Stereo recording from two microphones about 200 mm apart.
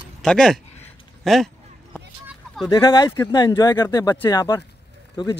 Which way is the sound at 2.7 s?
20° left (ahead or behind).